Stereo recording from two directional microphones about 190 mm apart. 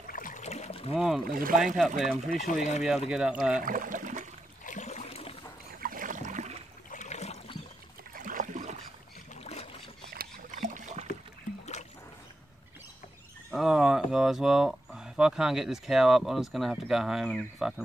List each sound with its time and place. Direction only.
0.1 s a sound: 45° left (ahead or behind)
0.9 s speech: 5° right (ahead or behind)
1.3 s speech: 50° right (ahead or behind)
2.0 s speech: centre (ahead or behind)
2.3 s speech: 45° left (ahead or behind)
3.1 s speech: 5° right (ahead or behind)
3.6 s a sound: 45° right (ahead or behind)
4.6 s a sound: 40° left (ahead or behind)
5.8 s a sound: 45° right (ahead or behind)
6.9 s boat: 40° left (ahead or behind)
8.1 s boat: 45° right (ahead or behind)
9.3 s boat: 35° left (ahead or behind)
10.1 s boat: 45° right (ahead or behind)
13.5 s speech: centre (ahead or behind)